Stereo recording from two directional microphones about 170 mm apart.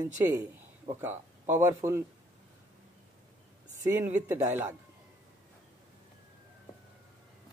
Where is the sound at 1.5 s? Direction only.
15° right (ahead or behind).